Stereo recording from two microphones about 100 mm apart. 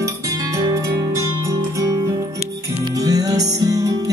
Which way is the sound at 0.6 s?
30° right (ahead or behind).